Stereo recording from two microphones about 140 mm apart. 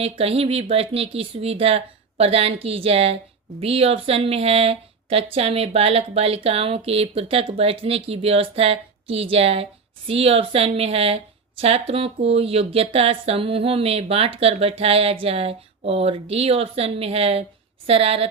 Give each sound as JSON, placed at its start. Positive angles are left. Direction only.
{"t": 0.0, "sound": "speech", "side_deg": -45}